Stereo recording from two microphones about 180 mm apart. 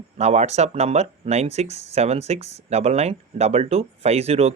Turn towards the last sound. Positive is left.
turn(degrees=-35)  # may be behind; listen again after turning